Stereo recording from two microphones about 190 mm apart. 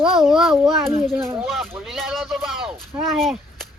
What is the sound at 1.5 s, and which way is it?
Speech, centre (ahead or behind).